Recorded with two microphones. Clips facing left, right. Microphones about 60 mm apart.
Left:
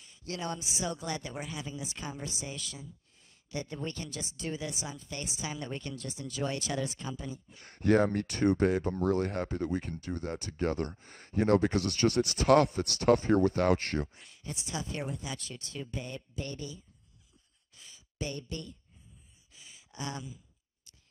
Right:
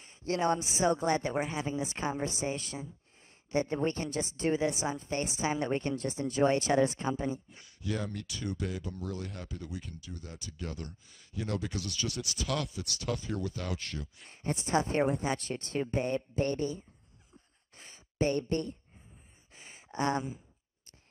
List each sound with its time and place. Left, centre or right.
0.0 s a woman's voice: right
7.6 s speech: left
14.2 s a woman's voice: right
17.7 s a sound: right